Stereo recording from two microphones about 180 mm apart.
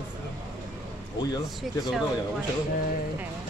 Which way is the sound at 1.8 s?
Centre (ahead or behind).